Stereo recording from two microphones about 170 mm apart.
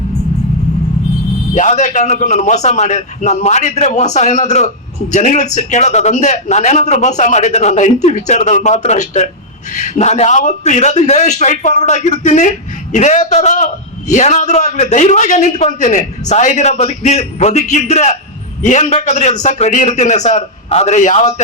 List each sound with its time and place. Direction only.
1.5 s a man's voice: 45° left (ahead or behind)